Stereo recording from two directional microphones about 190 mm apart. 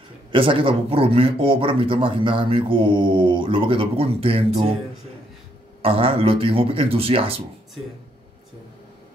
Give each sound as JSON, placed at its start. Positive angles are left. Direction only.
{"t": 0.3, "sound": "speech", "side_deg": -25}
{"t": 5.8, "sound": "speech", "side_deg": -30}